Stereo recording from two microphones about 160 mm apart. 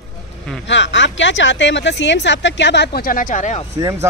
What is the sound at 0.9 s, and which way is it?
Speech, 90° left.